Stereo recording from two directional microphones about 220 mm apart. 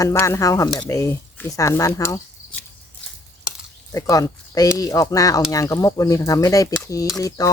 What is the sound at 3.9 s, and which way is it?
Speech, 15° left (ahead or behind).